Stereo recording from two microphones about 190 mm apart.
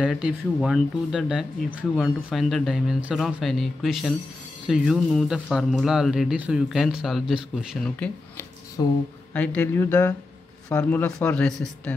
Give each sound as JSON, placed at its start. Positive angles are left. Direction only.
{"t": 0.0, "sound": "speech", "side_deg": -5}
{"t": 8.0, "sound": "a sound", "side_deg": 10}
{"t": 9.3, "sound": "a man's voice", "side_deg": 5}